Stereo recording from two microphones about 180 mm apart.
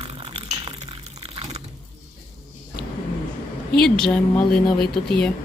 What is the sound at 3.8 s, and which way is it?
Speech, 5° left (ahead or behind).